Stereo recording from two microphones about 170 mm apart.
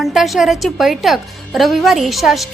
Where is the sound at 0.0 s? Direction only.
Centre (ahead or behind).